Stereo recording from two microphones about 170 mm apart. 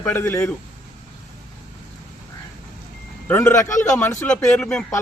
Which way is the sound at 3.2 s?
10° left (ahead or behind).